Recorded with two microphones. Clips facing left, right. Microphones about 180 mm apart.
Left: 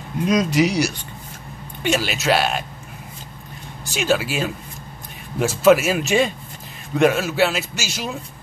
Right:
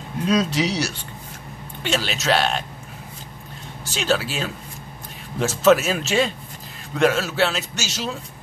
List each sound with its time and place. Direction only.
0.3 s a man's voice: 10° left (ahead or behind)
3.9 s a man's voice: 10° left (ahead or behind)